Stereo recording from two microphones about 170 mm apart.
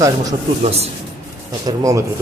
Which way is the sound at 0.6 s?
40° right (ahead or behind).